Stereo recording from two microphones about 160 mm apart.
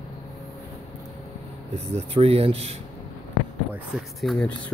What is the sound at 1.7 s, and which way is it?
Speech, 40° right (ahead or behind).